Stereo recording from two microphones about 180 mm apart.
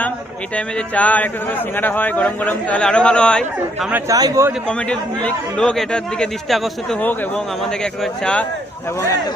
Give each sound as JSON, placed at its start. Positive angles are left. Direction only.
{"t": 0.5, "sound": "a man's voice", "side_deg": 10}
{"t": 3.9, "sound": "a man's voice", "side_deg": -15}
{"t": 4.9, "sound": "a man's voice", "side_deg": 5}